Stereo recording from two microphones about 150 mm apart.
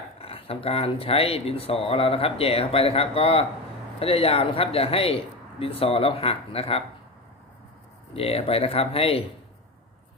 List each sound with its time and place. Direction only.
0.2 s speech: 40° left (ahead or behind)
8.1 s speech: 40° left (ahead or behind)